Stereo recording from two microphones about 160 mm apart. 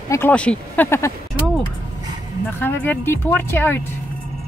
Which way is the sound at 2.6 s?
10° left (ahead or behind).